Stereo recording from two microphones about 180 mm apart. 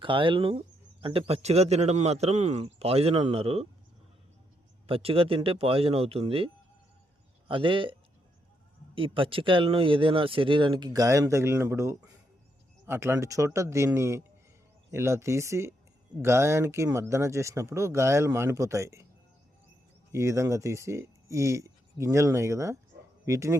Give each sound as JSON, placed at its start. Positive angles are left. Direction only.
{"t": 0.0, "sound": "a man's voice", "side_deg": -30}
{"t": 4.9, "sound": "a man's voice", "side_deg": -30}
{"t": 9.0, "sound": "speech", "side_deg": -30}
{"t": 20.1, "sound": "speech", "side_deg": -15}